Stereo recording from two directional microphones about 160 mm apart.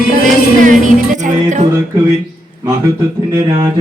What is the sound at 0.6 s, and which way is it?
Music, 55° right (ahead or behind).